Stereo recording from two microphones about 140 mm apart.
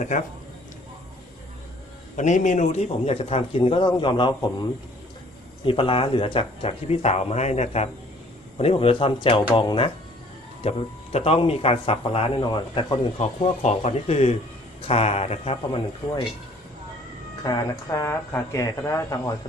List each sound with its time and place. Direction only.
0.0 s a man's voice: 65° left (ahead or behind)
2.1 s speech: 60° left (ahead or behind); by 4.4 s 35° left (ahead or behind)
5.6 s speech: 40° left (ahead or behind)
10.6 s speech: 50° left (ahead or behind)
12.4 s speech: 35° left (ahead or behind)
13.1 s speech: 55° left (ahead or behind)
17.4 s speech: 25° left (ahead or behind)